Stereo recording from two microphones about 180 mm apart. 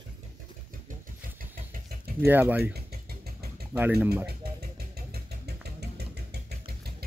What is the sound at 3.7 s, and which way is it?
Speech, 10° right (ahead or behind).